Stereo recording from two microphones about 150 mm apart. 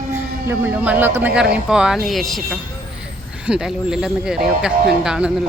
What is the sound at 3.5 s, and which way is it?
Speech, 5° right (ahead or behind).